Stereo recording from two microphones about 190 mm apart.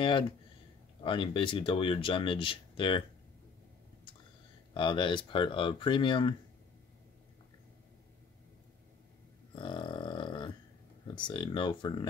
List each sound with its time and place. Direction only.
1.0 s speech: 25° left (ahead or behind)
4.7 s speech: 25° left (ahead or behind)
9.6 s burping: 25° left (ahead or behind)
11.1 s speech: 25° left (ahead or behind)